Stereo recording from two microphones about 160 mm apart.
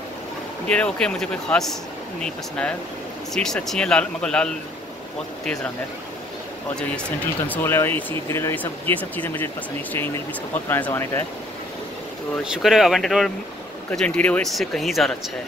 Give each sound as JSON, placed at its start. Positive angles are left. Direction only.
{"t": 0.7, "sound": "speech", "side_deg": 5}
{"t": 6.7, "sound": "speech", "side_deg": 5}
{"t": 10.7, "sound": "speech", "side_deg": 15}
{"t": 12.4, "sound": "speech", "side_deg": 0}